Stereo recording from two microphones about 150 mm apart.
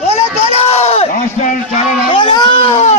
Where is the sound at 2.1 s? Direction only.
30° left (ahead or behind).